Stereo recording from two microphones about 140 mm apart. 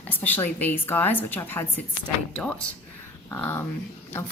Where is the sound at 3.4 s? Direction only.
15° left (ahead or behind).